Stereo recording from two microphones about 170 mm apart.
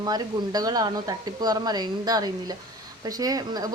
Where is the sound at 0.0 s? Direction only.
25° right (ahead or behind).